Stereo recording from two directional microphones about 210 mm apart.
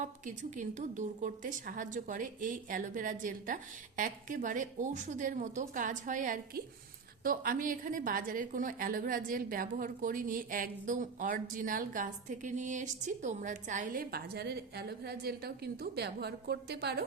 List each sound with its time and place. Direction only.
0.0 s a woman's voice: 35° right (ahead or behind)